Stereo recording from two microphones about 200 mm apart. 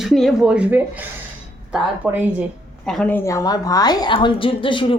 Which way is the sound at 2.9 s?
5° left (ahead or behind).